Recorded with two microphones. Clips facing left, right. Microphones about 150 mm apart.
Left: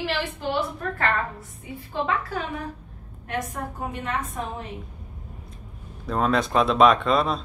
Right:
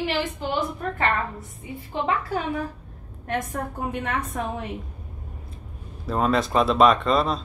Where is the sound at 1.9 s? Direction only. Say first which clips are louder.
Right 1 dB; 30° right (ahead or behind).